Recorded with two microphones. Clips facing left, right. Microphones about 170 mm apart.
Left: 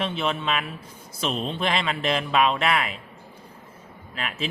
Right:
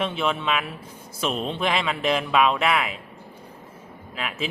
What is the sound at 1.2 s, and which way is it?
Speech, 5° right (ahead or behind).